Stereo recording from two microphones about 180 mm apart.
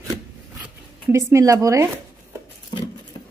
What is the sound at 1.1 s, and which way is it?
Speech, 15° right (ahead or behind).